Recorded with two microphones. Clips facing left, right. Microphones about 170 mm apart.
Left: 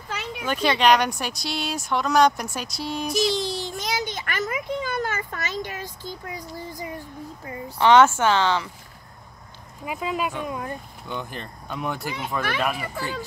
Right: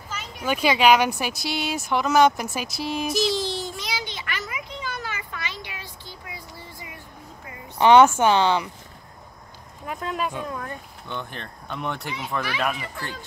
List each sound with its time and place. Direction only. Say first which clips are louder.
0.5 s speech: right 1 dB; 5° right (ahead or behind)
3.7 s a sound: left 4 dB; 45° left (ahead or behind)
7.7 s speech: right 2 dB; 15° right (ahead or behind)
9.8 s speech: left 1 dB; 5° left (ahead or behind)
10.4 s speech: left 2 dB; 15° left (ahead or behind)
11.1 s speech: left 1 dB; 5° left (ahead or behind)